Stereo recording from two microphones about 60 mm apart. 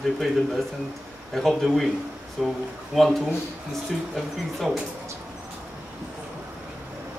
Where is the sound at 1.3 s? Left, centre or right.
Centre.